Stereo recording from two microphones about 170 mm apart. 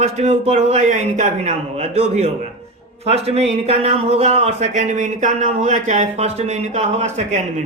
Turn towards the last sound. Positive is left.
turn(degrees=-45)  # may be behind; listen again after turning